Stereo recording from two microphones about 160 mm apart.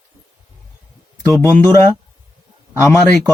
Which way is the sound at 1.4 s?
15° left (ahead or behind).